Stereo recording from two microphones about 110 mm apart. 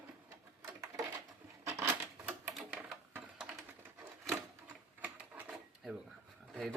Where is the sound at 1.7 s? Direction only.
25° right (ahead or behind).